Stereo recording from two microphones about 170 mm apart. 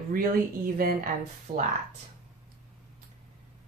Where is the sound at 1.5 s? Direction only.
45° right (ahead or behind).